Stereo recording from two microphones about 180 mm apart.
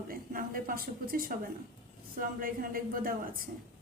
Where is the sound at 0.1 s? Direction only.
50° right (ahead or behind).